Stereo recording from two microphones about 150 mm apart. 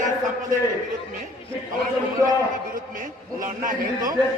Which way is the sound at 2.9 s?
60° right (ahead or behind).